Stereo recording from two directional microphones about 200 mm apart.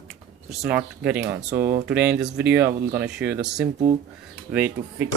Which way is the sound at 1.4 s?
55° right (ahead or behind).